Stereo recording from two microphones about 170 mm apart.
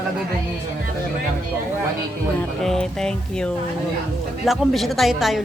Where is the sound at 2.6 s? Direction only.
5° left (ahead or behind).